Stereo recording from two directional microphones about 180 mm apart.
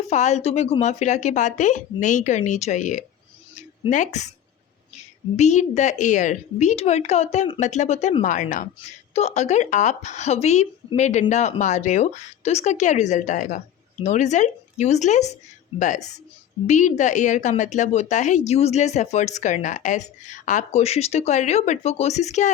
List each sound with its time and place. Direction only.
0.1 s speech: 40° left (ahead or behind)
5.4 s speech: 40° left (ahead or behind)